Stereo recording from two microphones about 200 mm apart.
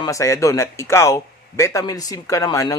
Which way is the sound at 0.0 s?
15° left (ahead or behind).